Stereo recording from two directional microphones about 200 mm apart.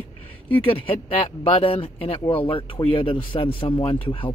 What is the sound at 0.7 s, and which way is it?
Speech, 25° left (ahead or behind).